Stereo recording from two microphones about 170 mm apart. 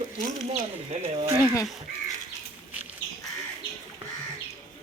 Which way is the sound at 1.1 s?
35° right (ahead or behind).